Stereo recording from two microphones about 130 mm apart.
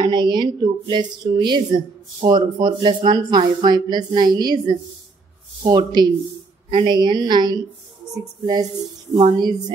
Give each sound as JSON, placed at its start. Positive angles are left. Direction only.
{"t": 0.0, "sound": "speech", "side_deg": -35}
{"t": 9.2, "sound": "speech", "side_deg": -35}